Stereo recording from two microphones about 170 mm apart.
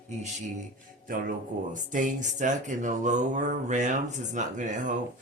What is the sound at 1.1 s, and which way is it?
Speech, 55° right (ahead or behind).